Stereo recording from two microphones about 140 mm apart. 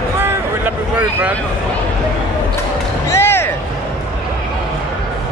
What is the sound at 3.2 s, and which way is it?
Music, 15° left (ahead or behind).